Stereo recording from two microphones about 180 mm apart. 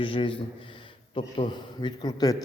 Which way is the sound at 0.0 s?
30° left (ahead or behind).